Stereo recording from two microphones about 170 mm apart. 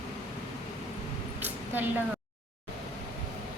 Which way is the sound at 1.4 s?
10° right (ahead or behind).